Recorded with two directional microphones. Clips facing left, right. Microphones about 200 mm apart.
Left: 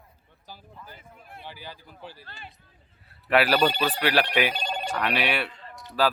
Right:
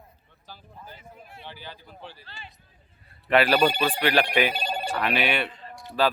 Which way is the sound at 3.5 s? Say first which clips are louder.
Right 1 dB; 10° right (ahead or behind).